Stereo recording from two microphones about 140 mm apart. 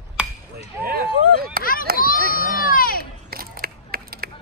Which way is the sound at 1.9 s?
90° left.